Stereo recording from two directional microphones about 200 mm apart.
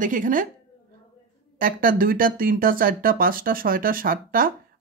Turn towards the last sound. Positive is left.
turn(degrees=-45)  # may be behind; listen again after turning